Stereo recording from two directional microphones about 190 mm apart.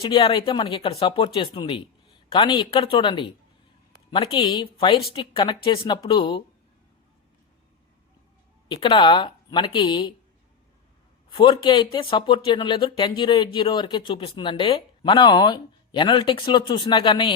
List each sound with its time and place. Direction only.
0.0 s speech: 25° left (ahead or behind)
8.7 s speech: 25° left (ahead or behind)
11.3 s speech: 25° left (ahead or behind)